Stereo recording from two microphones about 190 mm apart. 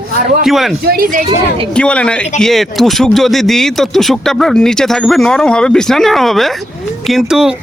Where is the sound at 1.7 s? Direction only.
5° left (ahead or behind).